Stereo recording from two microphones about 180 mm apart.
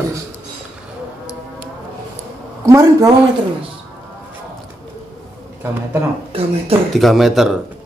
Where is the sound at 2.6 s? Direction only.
15° right (ahead or behind).